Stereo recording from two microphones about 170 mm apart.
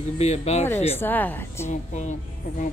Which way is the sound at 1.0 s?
10° left (ahead or behind).